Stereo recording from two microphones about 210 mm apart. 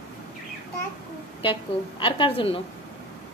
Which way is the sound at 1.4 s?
25° left (ahead or behind).